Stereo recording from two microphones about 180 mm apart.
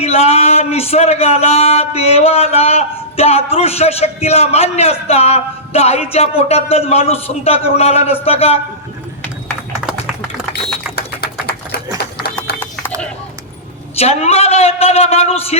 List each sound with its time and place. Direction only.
0.0 s speech: 35° left (ahead or behind)
10.5 s alarm: 60° left (ahead or behind)
12.5 s run: 10° left (ahead or behind)
14.0 s speech: 35° left (ahead or behind)